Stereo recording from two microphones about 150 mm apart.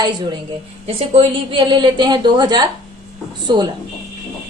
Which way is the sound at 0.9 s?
40° right (ahead or behind).